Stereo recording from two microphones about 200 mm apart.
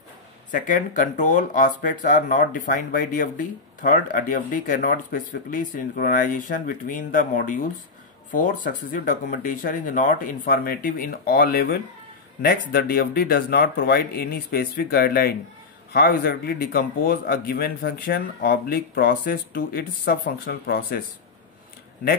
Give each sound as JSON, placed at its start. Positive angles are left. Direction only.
{"t": 0.5, "sound": "speech", "side_deg": 40}